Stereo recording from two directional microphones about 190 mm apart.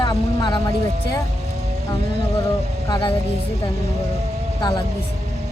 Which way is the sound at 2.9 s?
25° left (ahead or behind).